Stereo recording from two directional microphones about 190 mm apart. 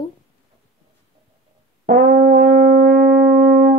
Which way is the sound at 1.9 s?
40° right (ahead or behind).